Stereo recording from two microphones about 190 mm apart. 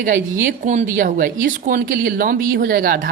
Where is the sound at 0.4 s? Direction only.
40° right (ahead or behind).